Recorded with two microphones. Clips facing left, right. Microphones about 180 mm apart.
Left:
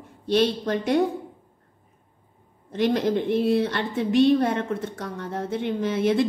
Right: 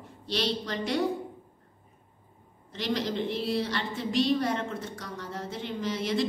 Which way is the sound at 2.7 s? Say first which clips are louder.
Left 8 dB; 55° left (ahead or behind).